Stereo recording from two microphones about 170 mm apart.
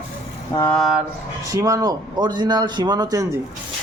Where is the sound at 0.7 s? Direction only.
Centre (ahead or behind).